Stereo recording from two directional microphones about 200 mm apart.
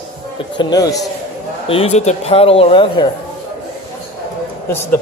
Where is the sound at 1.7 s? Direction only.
30° left (ahead or behind).